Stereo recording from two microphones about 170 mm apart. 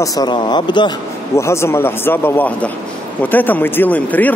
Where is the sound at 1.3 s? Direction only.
15° left (ahead or behind).